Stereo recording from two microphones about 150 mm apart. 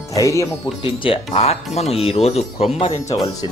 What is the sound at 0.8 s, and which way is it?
Speech, 40° left (ahead or behind).